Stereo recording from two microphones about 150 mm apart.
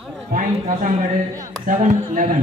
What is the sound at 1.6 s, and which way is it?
Speech, 60° right (ahead or behind).